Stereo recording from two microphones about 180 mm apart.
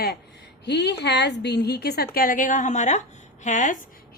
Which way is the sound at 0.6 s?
70° left (ahead or behind).